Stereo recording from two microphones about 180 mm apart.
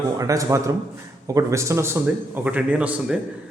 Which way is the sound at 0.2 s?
20° right (ahead or behind).